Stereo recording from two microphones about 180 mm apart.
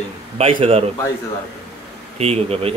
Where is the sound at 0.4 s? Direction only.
30° right (ahead or behind).